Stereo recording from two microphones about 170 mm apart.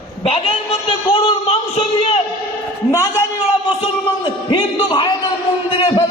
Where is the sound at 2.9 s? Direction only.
20° left (ahead or behind).